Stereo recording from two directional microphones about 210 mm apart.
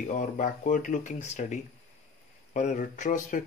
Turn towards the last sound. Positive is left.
turn(degrees=40)  # may be behind; listen again after turning